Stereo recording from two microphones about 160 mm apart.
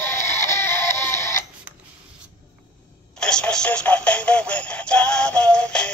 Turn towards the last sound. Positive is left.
turn(degrees=5)  # may be behind; listen again after turning